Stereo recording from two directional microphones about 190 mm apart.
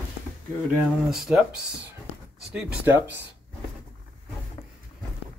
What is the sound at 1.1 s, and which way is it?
Speech, 5° right (ahead or behind).